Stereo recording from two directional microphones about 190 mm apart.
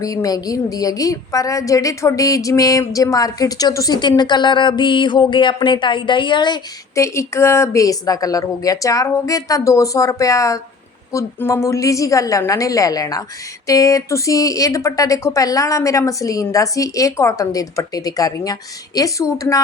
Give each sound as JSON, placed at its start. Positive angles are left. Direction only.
{"t": 0.0, "sound": "a woman's voice", "side_deg": 20}